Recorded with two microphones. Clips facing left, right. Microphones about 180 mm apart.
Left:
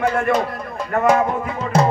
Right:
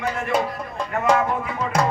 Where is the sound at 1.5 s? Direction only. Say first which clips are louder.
Left 5 dB; 25° left (ahead or behind).